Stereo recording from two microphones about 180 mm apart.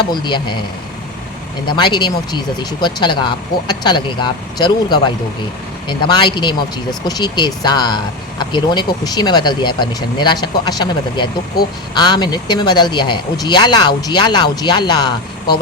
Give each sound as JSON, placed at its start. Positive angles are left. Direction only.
{"t": 0.0, "sound": "speech", "side_deg": 25}
{"t": 1.6, "sound": "speech", "side_deg": 25}